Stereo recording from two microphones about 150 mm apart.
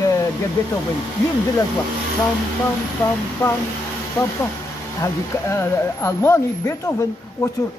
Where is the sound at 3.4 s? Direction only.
10° left (ahead or behind).